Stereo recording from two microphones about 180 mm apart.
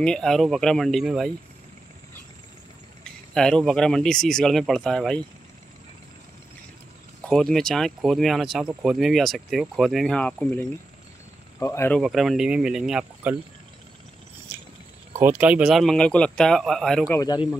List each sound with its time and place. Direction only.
0.0 s speech: 5° left (ahead or behind)
3.0 s speech: 5° left (ahead or behind)
7.2 s speech: centre (ahead or behind)
11.6 s speech: 15° left (ahead or behind)
12.0 s speech: centre (ahead or behind)
15.1 s speech: 10° right (ahead or behind)
17.1 s speech: 20° left (ahead or behind)